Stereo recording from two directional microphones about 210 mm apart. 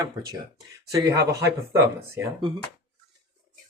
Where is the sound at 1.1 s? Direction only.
50° right (ahead or behind).